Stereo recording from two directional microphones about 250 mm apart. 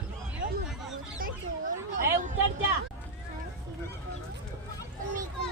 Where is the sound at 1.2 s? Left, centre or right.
Right.